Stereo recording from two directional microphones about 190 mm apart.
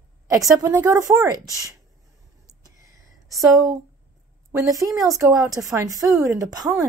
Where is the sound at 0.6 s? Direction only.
15° right (ahead or behind).